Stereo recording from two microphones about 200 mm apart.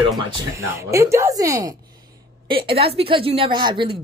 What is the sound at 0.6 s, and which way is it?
A woman's voice, 15° right (ahead or behind).